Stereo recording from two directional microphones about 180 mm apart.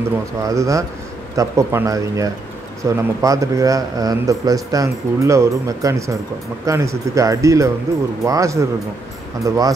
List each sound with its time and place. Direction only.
0.4 s a man's voice: 20° right (ahead or behind)